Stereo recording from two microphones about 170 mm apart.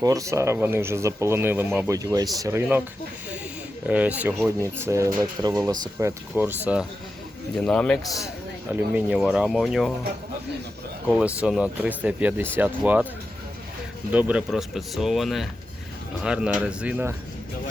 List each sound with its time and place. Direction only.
0.0 s speech: 20° right (ahead or behind)
3.8 s speech: 10° right (ahead or behind)
7.5 s speech: 5° left (ahead or behind)
8.7 s speech: 5° right (ahead or behind)
11.4 s speech: 5° right (ahead or behind)
14.1 s speech: 10° right (ahead or behind)